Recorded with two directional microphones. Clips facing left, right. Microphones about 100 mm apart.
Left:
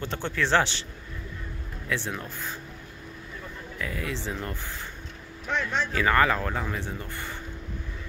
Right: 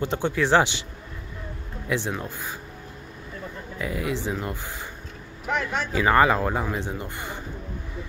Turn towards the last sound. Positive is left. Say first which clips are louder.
# right 3 dB
turn(degrees=-15)  # may be behind; listen again after turning